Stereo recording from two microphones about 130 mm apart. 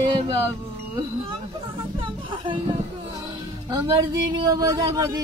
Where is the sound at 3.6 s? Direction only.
35° right (ahead or behind).